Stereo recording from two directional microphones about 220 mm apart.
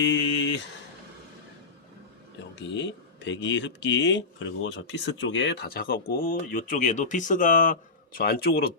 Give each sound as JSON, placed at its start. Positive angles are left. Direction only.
{"t": 0.0, "sound": "speech", "side_deg": 55}
{"t": 2.6, "sound": "speech", "side_deg": 55}